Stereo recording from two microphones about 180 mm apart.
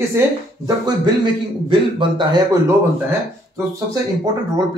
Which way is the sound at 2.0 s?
25° right (ahead or behind).